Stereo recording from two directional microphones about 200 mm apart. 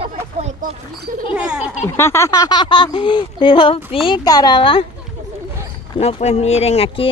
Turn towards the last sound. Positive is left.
turn(degrees=30)  # may be behind; listen again after turning